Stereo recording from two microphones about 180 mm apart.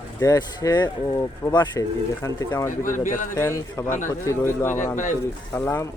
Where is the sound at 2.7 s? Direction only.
45° left (ahead or behind).